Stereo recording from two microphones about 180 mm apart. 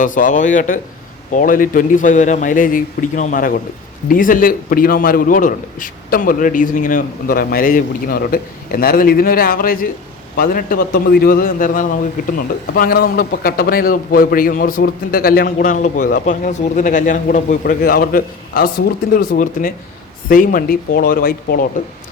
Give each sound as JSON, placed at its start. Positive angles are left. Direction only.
{"t": 0.0, "sound": "a man's voice", "side_deg": 45}